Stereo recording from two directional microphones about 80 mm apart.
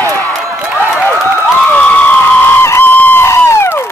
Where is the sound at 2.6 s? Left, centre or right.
Left.